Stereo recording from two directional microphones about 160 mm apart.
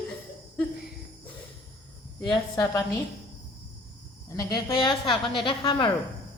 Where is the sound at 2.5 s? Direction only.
25° left (ahead or behind).